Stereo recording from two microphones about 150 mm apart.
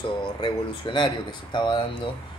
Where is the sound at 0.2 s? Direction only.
35° left (ahead or behind).